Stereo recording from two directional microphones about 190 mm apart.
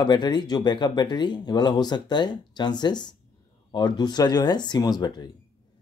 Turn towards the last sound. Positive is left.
turn(degrees=20)  # may be behind; listen again after turning